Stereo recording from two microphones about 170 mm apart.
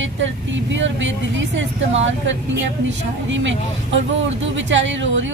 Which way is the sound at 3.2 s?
90° right.